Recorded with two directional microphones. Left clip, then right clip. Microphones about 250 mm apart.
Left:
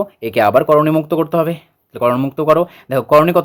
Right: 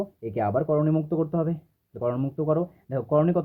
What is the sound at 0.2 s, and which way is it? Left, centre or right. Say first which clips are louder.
Speech: left 14 dB; left.